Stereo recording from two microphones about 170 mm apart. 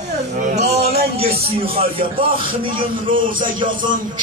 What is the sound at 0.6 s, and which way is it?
Music, 40° right (ahead or behind).